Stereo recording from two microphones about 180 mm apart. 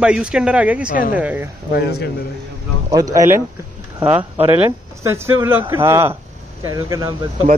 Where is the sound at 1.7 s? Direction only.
65° left (ahead or behind).